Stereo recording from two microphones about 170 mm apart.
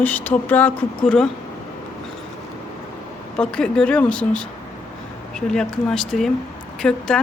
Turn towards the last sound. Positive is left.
turn(degrees=5)  # may be behind; listen again after turning